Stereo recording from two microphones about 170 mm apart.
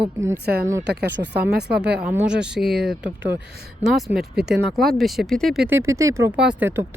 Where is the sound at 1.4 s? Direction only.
75° right (ahead or behind).